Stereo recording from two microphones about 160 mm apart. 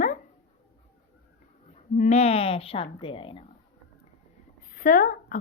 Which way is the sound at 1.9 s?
50° left (ahead or behind).